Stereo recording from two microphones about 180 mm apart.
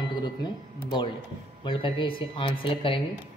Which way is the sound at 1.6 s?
25° left (ahead or behind).